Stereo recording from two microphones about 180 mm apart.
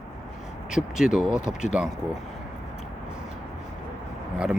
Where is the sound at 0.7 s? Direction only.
5° right (ahead or behind).